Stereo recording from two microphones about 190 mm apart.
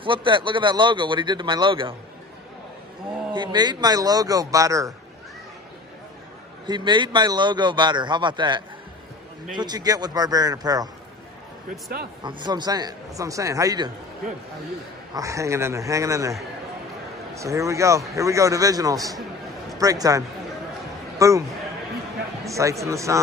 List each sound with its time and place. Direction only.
0.0 s a man's voice: 25° right (ahead or behind)
3.3 s a man's voice: 20° right (ahead or behind)
6.6 s a man's voice: 25° right (ahead or behind)
12.2 s a man's voice: 25° right (ahead or behind)
15.1 s speech: 15° right (ahead or behind)